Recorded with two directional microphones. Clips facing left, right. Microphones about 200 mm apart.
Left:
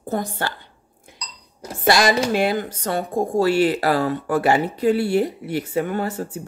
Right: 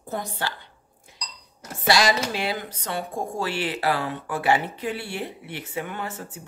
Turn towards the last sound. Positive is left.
turn(degrees=40)  # may be behind; listen again after turning